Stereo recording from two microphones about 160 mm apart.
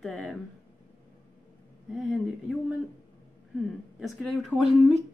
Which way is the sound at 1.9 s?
Centre (ahead or behind).